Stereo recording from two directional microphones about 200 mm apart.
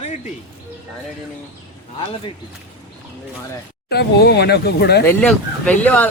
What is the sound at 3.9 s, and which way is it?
Speech, 55° left (ahead or behind).